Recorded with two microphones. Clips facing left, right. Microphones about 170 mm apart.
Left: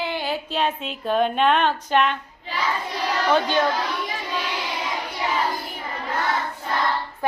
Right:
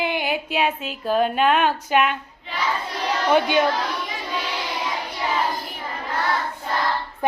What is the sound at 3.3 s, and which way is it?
Speech, 15° right (ahead or behind).